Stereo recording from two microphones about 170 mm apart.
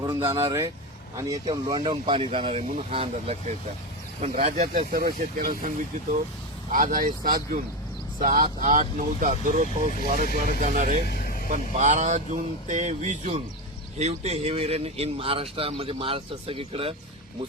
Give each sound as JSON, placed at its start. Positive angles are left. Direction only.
{"t": 0.0, "sound": "speech", "side_deg": -20}
{"t": 11.0, "sound": "vehicle", "side_deg": 60}
{"t": 11.4, "sound": "speech", "side_deg": -45}